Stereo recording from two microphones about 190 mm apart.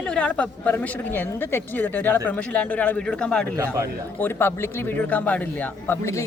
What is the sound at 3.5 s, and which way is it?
Speech, 15° right (ahead or behind).